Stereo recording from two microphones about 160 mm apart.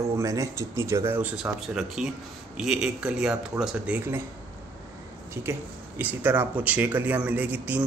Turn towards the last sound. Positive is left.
turn(degrees=-10)  # may be behind; listen again after turning